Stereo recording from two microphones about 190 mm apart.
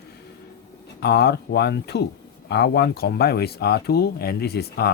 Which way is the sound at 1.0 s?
60° left (ahead or behind).